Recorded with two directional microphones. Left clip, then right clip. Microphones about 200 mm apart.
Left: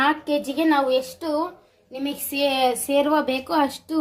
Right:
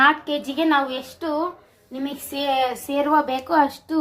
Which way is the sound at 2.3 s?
45° left (ahead or behind).